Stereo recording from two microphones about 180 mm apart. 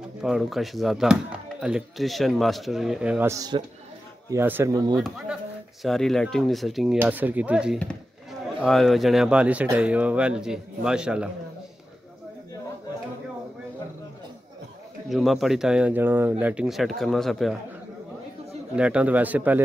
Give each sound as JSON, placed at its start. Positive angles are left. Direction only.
{"t": 0.2, "sound": "speech", "side_deg": 0}
{"t": 5.8, "sound": "speech", "side_deg": 0}
{"t": 15.0, "sound": "speech", "side_deg": 0}
{"t": 18.8, "sound": "speech", "side_deg": -5}